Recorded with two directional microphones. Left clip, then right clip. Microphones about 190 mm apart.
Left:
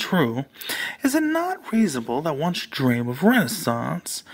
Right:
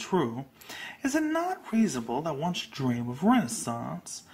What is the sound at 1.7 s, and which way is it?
Speech, 55° left (ahead or behind).